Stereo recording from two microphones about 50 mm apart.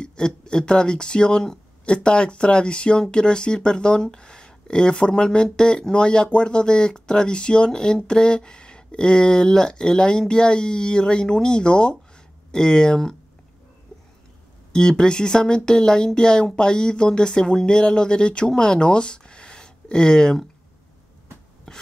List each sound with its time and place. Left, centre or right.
0.0 s speech: centre
14.7 s speech: centre